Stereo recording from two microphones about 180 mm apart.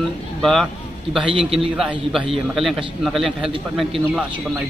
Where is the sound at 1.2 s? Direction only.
30° right (ahead or behind).